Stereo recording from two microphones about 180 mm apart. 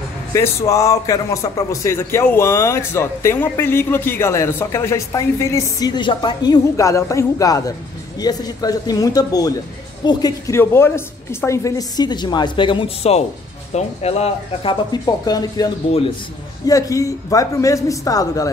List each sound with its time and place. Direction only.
0.3 s a woman's voice: 15° left (ahead or behind)